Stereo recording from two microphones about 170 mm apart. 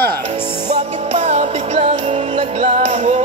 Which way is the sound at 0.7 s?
40° right (ahead or behind).